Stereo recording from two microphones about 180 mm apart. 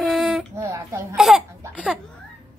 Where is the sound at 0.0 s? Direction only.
Centre (ahead or behind).